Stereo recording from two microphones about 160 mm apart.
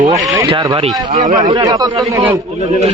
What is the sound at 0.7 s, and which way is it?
Speech, 40° right (ahead or behind).